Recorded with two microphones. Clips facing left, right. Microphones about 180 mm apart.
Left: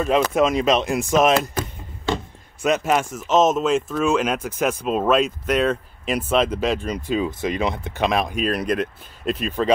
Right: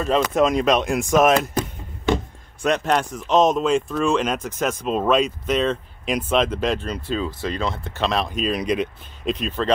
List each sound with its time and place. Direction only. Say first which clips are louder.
0.0 s speech: even; 5° left (ahead or behind)
1.3 s a sound: right 1 dB; 15° right (ahead or behind)
2.6 s speech: left 1 dB; 5° left (ahead or behind)